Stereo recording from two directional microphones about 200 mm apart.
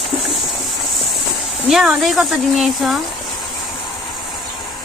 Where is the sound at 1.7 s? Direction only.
Centre (ahead or behind).